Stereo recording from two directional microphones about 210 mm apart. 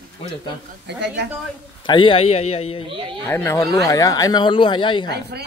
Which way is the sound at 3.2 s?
10° left (ahead or behind).